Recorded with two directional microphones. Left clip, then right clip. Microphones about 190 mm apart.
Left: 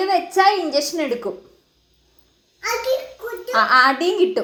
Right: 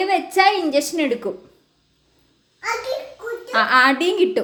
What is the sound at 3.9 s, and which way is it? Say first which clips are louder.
Speech: even; 20° right (ahead or behind).